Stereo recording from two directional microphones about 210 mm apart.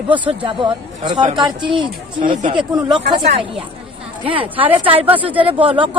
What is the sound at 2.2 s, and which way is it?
Speech, 35° right (ahead or behind).